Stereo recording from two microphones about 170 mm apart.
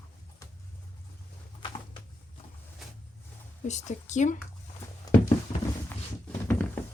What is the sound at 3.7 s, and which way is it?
Speech, 45° left (ahead or behind).